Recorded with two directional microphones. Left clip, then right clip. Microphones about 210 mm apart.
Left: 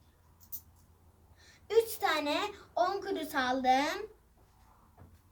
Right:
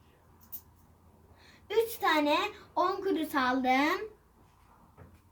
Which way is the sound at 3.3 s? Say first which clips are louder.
Even; 10° left (ahead or behind).